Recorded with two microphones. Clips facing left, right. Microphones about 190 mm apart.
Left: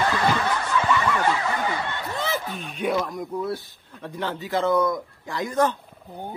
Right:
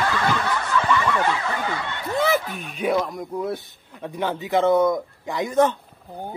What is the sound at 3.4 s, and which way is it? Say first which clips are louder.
Speech: right 1 dB; 20° right (ahead or behind).